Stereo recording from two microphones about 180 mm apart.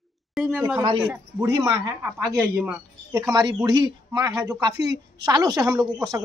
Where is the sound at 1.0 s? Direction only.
15° right (ahead or behind).